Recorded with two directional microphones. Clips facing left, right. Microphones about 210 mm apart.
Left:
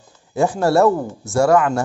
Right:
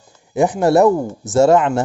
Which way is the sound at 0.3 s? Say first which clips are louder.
Right 3 dB; 20° right (ahead or behind).